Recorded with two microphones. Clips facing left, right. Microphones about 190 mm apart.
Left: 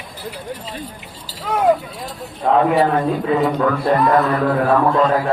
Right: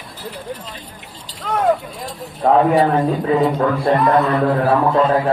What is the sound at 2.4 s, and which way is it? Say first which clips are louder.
Speech: right 2 dB; 45° right (ahead or behind).